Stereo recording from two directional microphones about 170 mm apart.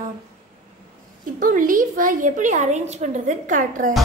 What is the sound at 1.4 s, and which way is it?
A woman's voice, 50° right (ahead or behind).